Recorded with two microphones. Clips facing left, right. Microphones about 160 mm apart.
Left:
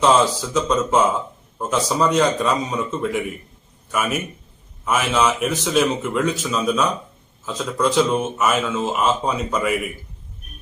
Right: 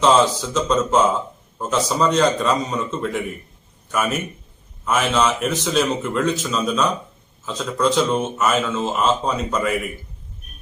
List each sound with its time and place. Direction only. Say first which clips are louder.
0.0 s speech: right 1 dB; centre (ahead or behind)
4.9 s speech: even; 5° left (ahead or behind)